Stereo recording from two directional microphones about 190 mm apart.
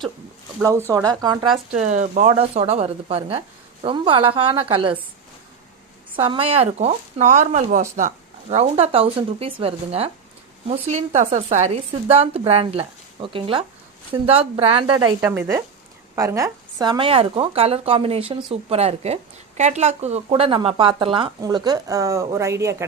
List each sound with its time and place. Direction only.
0.9 s speech: 15° right (ahead or behind)
1.7 s speech: 40° right (ahead or behind)
6.1 s speech: 25° right (ahead or behind)
15.2 s speech: 10° right (ahead or behind)